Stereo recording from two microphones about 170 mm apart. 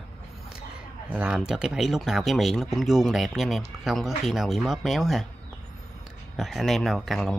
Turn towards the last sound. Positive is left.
turn(degrees=0)  # may be behind; listen again after turning